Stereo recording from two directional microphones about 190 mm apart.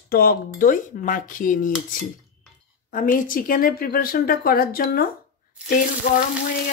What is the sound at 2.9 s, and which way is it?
Speech, 45° left (ahead or behind).